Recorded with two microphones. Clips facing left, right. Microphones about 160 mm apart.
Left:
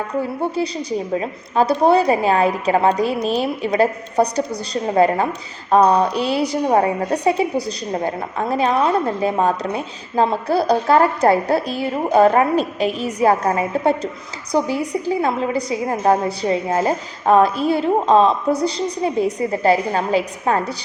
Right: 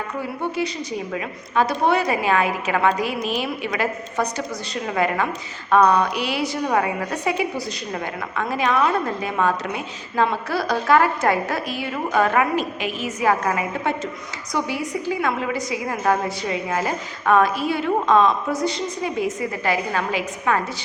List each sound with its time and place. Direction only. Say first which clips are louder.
0.5 s a woman's voice: left 4 dB; 35° left (ahead or behind)